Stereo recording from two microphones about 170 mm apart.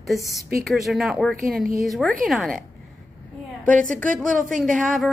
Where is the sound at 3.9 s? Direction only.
50° right (ahead or behind).